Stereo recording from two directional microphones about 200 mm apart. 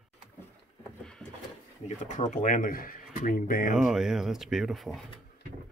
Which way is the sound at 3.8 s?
Centre (ahead or behind).